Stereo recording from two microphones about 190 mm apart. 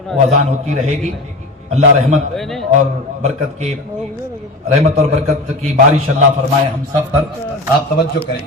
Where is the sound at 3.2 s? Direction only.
35° right (ahead or behind).